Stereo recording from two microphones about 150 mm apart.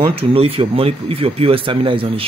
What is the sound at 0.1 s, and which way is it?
Speech, 40° right (ahead or behind).